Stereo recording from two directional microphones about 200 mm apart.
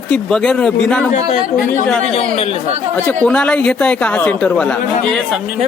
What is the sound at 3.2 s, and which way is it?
A man's voice, 5° left (ahead or behind).